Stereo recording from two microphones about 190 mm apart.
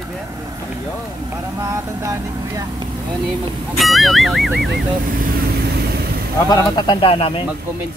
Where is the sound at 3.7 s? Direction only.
Centre (ahead or behind).